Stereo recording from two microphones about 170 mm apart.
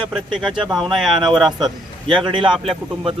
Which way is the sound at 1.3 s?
Centre (ahead or behind).